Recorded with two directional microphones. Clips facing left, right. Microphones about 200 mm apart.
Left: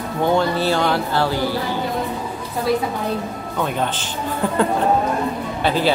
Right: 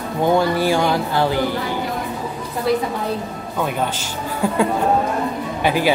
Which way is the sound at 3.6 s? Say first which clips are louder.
Even; 10° right (ahead or behind).